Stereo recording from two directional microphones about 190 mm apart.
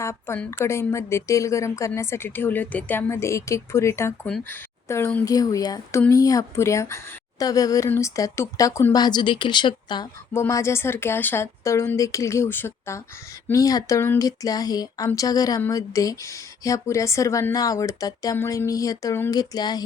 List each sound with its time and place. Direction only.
0.0 s speech: 15° left (ahead or behind)